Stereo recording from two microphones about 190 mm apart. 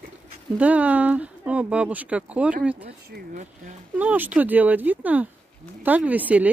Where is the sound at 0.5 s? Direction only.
5° right (ahead or behind).